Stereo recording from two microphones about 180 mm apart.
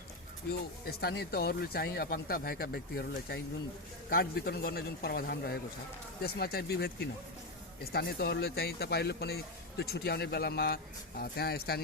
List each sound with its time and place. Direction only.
0.9 s speech: 60° left (ahead or behind)